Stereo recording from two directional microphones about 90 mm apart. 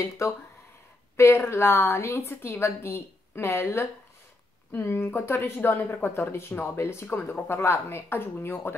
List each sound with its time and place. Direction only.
0.2 s a woman's voice: 30° left (ahead or behind)